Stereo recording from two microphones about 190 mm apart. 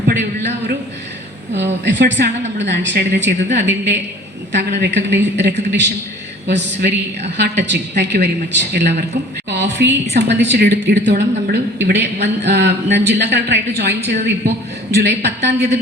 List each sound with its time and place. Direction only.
0.0 s a sound: 55° right (ahead or behind)
1.5 s a woman's voice: 65° right (ahead or behind)
4.9 s a woman's voice: 65° right (ahead or behind)